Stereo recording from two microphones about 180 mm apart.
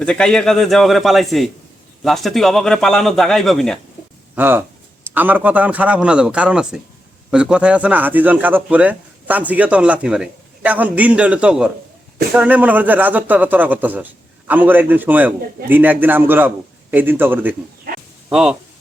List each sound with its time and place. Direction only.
0.0 s a man's voice: 5° left (ahead or behind)
4.4 s speech: 10° right (ahead or behind)
17.9 s a sound: 55° right (ahead or behind)
18.3 s speech: 5° right (ahead or behind)